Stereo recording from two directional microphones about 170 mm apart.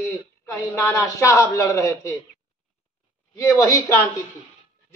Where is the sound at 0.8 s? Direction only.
20° left (ahead or behind).